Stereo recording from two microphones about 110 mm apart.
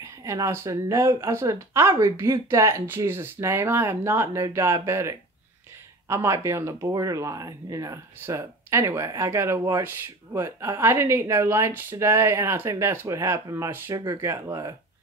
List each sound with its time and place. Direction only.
0.0 s speech: 30° right (ahead or behind)
13.8 s speech: 35° right (ahead or behind)